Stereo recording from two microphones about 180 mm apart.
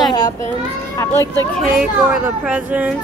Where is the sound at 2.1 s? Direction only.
5° right (ahead or behind).